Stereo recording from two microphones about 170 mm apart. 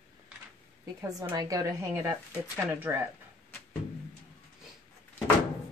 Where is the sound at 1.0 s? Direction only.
20° right (ahead or behind).